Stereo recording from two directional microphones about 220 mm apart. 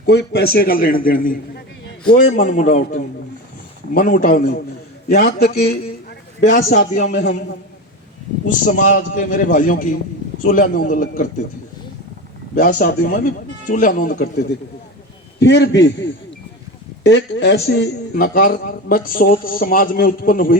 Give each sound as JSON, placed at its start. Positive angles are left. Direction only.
{"t": 0.0, "sound": "a man's voice", "side_deg": 50}
{"t": 8.4, "sound": "a man's voice", "side_deg": 35}
{"t": 12.5, "sound": "a man's voice", "side_deg": 40}